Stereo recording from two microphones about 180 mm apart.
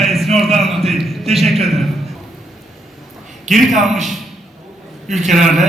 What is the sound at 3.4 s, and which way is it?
Speech, 40° right (ahead or behind).